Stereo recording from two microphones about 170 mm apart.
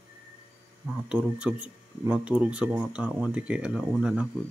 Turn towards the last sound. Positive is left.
turn(degrees=-5)  # may be behind; listen again after turning